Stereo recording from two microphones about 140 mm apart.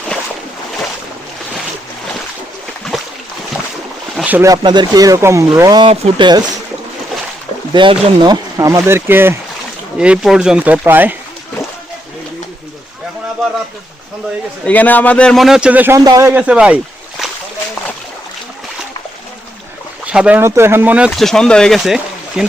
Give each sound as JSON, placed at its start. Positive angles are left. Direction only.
{"t": 4.2, "sound": "boat", "side_deg": -10}
{"t": 4.4, "sound": "speech", "side_deg": -30}
{"t": 5.8, "sound": "speech", "side_deg": -35}
{"t": 7.7, "sound": "speech", "side_deg": -35}
{"t": 14.6, "sound": "a man's voice", "side_deg": 10}
{"t": 16.0, "sound": "speech", "side_deg": -25}
{"t": 16.3, "sound": "speech", "side_deg": -10}
{"t": 20.1, "sound": "speech", "side_deg": -10}
{"t": 21.1, "sound": "speech", "side_deg": 0}